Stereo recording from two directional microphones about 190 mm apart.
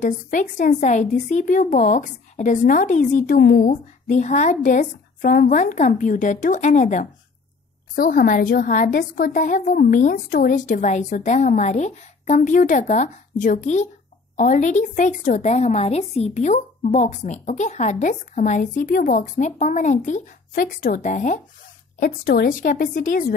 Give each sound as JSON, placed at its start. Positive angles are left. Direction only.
{"t": 0.0, "sound": "a woman's voice", "side_deg": 40}